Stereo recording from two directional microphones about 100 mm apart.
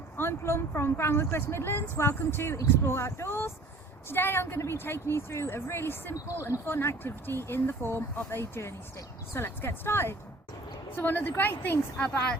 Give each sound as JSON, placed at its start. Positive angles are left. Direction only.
{"t": 0.2, "sound": "a woman's voice", "side_deg": 25}